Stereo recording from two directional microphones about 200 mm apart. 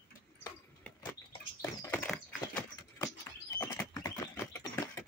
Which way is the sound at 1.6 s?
15° left (ahead or behind).